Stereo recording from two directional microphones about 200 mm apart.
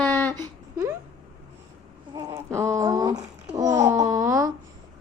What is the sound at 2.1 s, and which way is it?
Speech, 20° right (ahead or behind).